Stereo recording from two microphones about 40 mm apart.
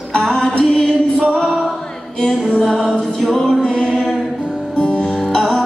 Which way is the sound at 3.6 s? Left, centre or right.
Left.